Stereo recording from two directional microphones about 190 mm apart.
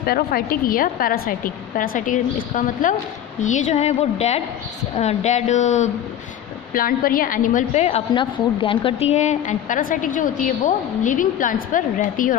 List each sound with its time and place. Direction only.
0.0 s a woman's voice: 55° left (ahead or behind); by 5.9 s 40° left (ahead or behind)
6.7 s a woman's voice: 50° left (ahead or behind)
8.1 s a woman's voice: 25° left (ahead or behind); by 12.4 s 45° left (ahead or behind)